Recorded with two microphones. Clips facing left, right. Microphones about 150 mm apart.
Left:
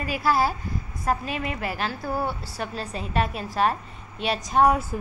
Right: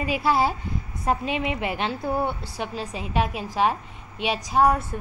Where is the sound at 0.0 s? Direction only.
20° right (ahead or behind).